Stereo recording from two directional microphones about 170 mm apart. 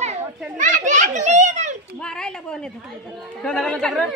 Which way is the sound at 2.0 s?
5° left (ahead or behind).